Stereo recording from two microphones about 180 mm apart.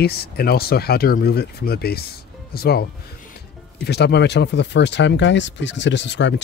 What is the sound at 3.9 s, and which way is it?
Speech, 70° left (ahead or behind).